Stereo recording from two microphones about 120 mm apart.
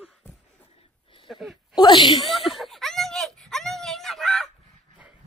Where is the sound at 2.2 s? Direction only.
Centre (ahead or behind).